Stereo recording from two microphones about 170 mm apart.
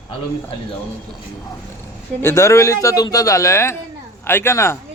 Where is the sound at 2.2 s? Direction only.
15° left (ahead or behind).